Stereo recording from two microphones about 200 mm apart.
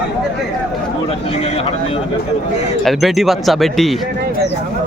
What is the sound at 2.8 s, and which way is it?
Speech, centre (ahead or behind).